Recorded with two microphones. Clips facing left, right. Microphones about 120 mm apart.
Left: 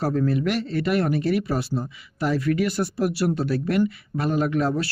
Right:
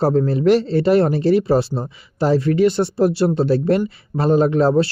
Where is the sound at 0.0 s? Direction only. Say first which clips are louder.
Right 6 dB; 30° right (ahead or behind).